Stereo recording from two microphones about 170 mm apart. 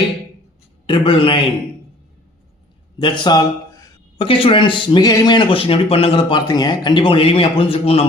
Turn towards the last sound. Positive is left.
turn(degrees=35)  # may be behind; listen again after turning